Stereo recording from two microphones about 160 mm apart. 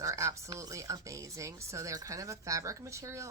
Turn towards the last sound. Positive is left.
turn(degrees=-20)  # may be behind; listen again after turning